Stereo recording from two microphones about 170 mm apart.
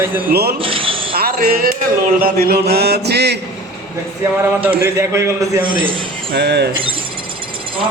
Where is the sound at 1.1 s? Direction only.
60° right (ahead or behind).